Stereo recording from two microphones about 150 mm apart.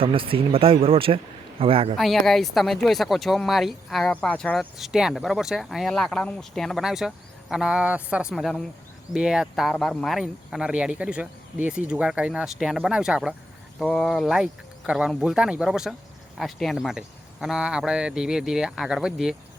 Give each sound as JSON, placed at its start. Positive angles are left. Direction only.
{"t": 0.0, "sound": "speech", "side_deg": -35}
{"t": 2.0, "sound": "speech", "side_deg": 0}
{"t": 13.7, "sound": "speech", "side_deg": 5}